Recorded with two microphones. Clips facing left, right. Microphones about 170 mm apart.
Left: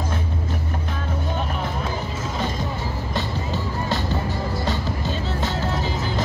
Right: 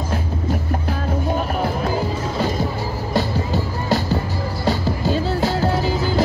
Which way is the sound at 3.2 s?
35° right (ahead or behind).